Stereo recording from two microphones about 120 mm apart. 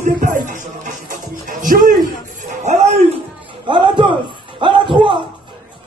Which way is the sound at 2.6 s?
70° right (ahead or behind).